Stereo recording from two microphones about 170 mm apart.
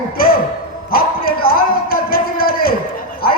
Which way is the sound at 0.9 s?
60° left (ahead or behind).